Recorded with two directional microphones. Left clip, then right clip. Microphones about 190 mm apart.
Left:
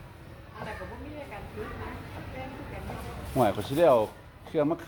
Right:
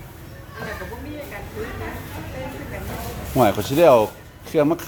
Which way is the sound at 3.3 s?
5° right (ahead or behind).